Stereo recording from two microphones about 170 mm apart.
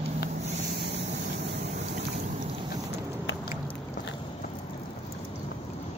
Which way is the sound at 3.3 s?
90° left.